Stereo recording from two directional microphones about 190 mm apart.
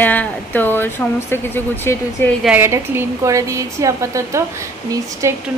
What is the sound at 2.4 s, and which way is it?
A woman's voice, 10° right (ahead or behind).